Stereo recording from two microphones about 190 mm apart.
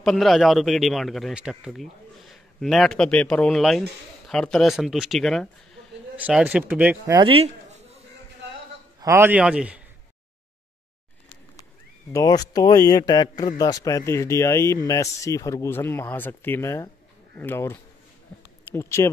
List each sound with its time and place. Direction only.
0.0 s a man's voice: centre (ahead or behind)
7.2 s speech: 30° right (ahead or behind)
9.0 s speech: 15° right (ahead or behind)
12.1 s speech: 20° left (ahead or behind)
18.3 s a sound: 10° left (ahead or behind)
18.7 s speech: 15° left (ahead or behind)